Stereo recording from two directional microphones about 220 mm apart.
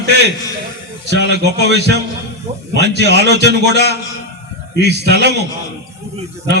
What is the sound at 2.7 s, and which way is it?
A man's voice, 50° right (ahead or behind).